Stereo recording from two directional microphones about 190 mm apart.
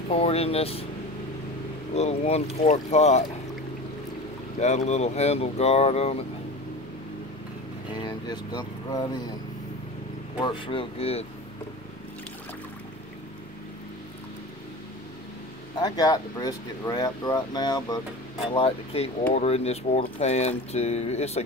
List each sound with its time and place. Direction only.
0.1 s speech: 30° left (ahead or behind)
2.0 s speech: 35° left (ahead or behind)
4.6 s speech: 35° left (ahead or behind)
8.0 s speech: 20° left (ahead or behind)
10.4 s speech: 30° left (ahead or behind)
15.8 s speech: 20° left (ahead or behind)